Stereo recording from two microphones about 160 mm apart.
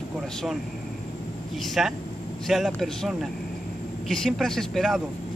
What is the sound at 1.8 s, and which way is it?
Speech, 5° right (ahead or behind).